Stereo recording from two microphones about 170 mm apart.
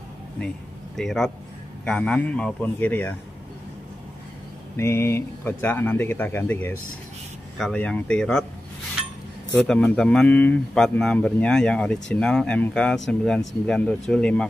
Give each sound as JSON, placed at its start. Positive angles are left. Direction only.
{"t": 0.9, "sound": "speech", "side_deg": 0}
{"t": 4.7, "sound": "speech", "side_deg": 15}
{"t": 9.7, "sound": "speech", "side_deg": 5}